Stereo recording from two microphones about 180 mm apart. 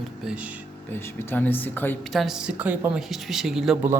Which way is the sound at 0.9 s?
15° left (ahead or behind).